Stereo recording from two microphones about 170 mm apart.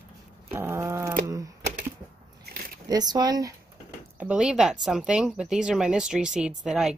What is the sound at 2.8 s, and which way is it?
Speech, 25° right (ahead or behind).